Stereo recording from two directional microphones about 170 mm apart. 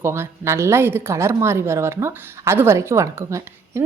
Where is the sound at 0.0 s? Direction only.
15° right (ahead or behind).